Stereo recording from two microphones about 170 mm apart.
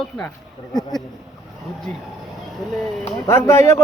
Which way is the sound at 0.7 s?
25° left (ahead or behind).